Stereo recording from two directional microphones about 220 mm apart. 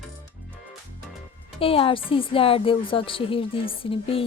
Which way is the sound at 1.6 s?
25° left (ahead or behind).